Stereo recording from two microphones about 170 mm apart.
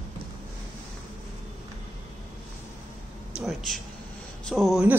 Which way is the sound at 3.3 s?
Centre (ahead or behind).